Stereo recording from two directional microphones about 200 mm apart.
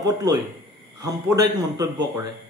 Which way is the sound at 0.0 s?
20° right (ahead or behind).